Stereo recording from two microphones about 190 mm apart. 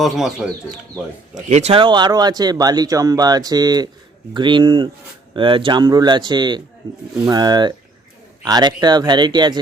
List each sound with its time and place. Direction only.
0.0 s speech: centre (ahead or behind)
1.5 s speech: 35° right (ahead or behind)